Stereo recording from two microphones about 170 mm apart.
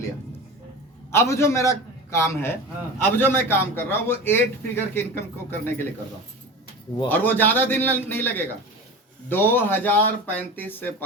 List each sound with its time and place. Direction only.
1.1 s a man's voice: 15° left (ahead or behind)
7.1 s a man's voice: 10° left (ahead or behind)